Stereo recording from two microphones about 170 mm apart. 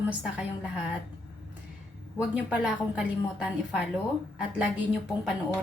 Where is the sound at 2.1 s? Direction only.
5° right (ahead or behind).